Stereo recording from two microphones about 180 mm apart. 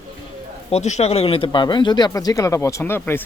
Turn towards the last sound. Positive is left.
turn(degrees=10)  # may be behind; listen again after turning